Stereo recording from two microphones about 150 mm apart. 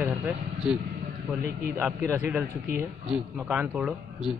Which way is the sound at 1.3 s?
Centre (ahead or behind).